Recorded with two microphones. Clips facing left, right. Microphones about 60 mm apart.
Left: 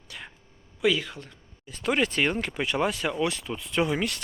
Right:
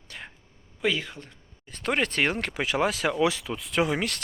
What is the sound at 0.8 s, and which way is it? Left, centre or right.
Speech, right.